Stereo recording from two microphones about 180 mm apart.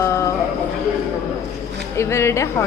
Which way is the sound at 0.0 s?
15° left (ahead or behind).